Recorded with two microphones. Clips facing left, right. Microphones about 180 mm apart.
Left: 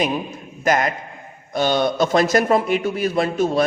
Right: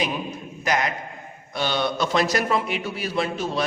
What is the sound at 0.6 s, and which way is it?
A man's voice, 50° left (ahead or behind).